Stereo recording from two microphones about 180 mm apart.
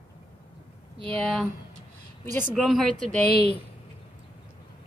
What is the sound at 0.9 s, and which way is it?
Speech, 30° right (ahead or behind).